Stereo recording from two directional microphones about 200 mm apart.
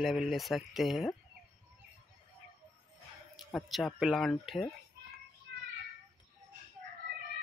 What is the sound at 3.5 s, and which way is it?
Speech, centre (ahead or behind).